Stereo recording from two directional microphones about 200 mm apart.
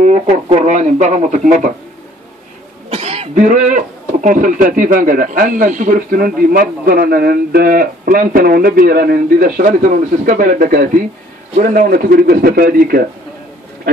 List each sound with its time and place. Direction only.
0.0 s speech: 35° right (ahead or behind)
2.9 s cough: 30° right (ahead or behind)
3.4 s speech: 40° right (ahead or behind)